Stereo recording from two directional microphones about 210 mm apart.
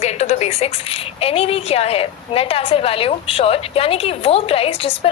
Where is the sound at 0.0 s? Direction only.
30° left (ahead or behind).